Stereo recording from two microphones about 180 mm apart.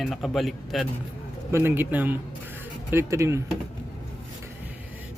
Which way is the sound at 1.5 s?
15° right (ahead or behind).